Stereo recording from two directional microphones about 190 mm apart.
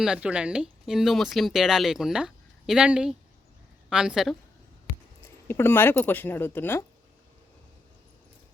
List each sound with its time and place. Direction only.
0.0 s speech: 5° right (ahead or behind)
5.5 s speech: 10° left (ahead or behind)